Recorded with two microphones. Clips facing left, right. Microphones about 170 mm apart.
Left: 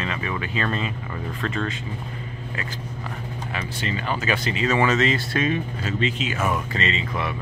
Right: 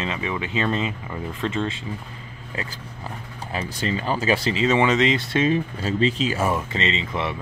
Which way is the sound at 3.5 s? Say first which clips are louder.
Right 4 dB; 35° right (ahead or behind).